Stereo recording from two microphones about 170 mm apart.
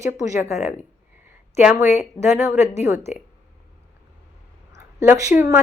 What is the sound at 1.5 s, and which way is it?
Speech, 15° right (ahead or behind).